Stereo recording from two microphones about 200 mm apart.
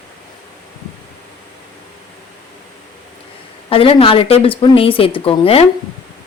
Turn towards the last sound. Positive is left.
turn(degrees=30)  # may be behind; listen again after turning